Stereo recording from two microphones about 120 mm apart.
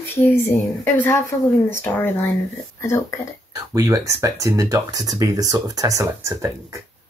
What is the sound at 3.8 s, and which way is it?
Speech, 25° right (ahead or behind).